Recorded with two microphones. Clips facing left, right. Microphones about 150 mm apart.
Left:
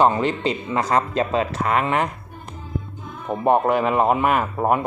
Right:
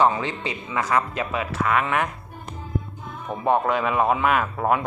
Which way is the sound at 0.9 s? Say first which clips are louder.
Left 4 dB; 35° left (ahead or behind).